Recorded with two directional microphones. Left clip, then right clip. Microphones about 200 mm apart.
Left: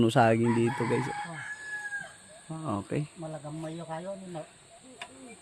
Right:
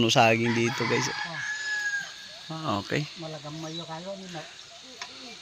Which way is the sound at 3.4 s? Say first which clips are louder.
Right 2 dB; 35° right (ahead or behind).